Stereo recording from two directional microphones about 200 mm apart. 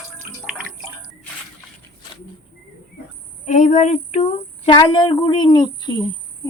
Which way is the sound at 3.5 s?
35° left (ahead or behind).